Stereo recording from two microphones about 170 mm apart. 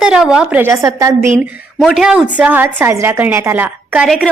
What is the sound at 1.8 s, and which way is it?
A woman's voice, 5° right (ahead or behind).